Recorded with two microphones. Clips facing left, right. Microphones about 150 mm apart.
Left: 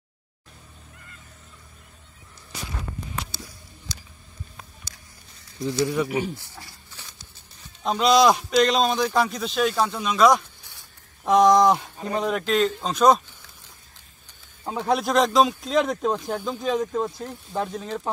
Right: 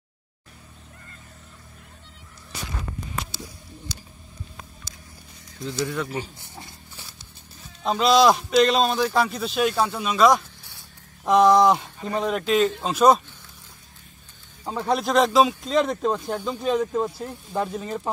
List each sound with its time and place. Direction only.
5.6 s speech: 15° left (ahead or behind)
6.5 s a sound: 15° right (ahead or behind)
7.8 s speech: centre (ahead or behind)
14.6 s speech: 5° left (ahead or behind)